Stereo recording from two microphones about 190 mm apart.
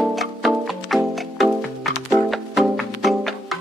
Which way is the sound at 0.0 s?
Centre (ahead or behind).